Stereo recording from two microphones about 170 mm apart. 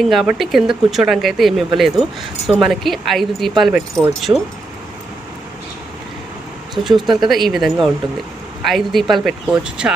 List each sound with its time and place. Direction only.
0.1 s speech: centre (ahead or behind)
4.3 s speech: 20° right (ahead or behind)
6.7 s speech: centre (ahead or behind)